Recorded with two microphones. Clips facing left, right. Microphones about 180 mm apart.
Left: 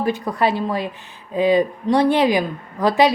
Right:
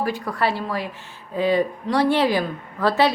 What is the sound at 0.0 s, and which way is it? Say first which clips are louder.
A woman's voice: left 3 dB; 20° left (ahead or behind).